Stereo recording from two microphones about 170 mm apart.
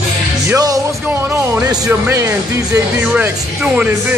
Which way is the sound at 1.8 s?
15° right (ahead or behind).